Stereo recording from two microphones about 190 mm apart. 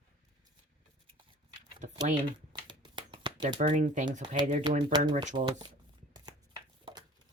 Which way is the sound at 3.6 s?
40° right (ahead or behind).